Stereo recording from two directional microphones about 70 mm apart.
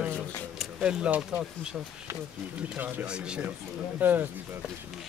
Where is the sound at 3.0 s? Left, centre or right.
Centre.